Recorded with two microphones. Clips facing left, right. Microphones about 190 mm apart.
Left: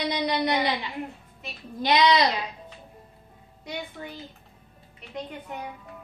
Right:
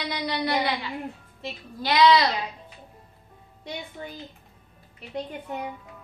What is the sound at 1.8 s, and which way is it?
Speech, 20° left (ahead or behind).